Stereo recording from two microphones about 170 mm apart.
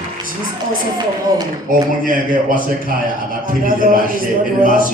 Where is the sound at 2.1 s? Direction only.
55° right (ahead or behind).